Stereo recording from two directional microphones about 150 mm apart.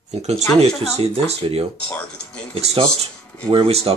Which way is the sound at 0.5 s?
45° right (ahead or behind).